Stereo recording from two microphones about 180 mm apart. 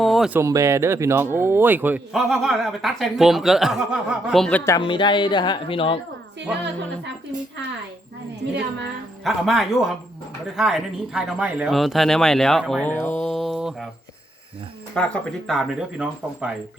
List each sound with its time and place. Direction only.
0.0 s a sound: centre (ahead or behind)
0.3 s speech: 15° right (ahead or behind); by 4.6 s 5° left (ahead or behind)
4.8 s speech: 25° left (ahead or behind)
8.4 s a woman's voice: 65° right (ahead or behind)
9.2 s speech: centre (ahead or behind)
13.3 s mantra: centre (ahead or behind)
14.9 s speech: 5° left (ahead or behind)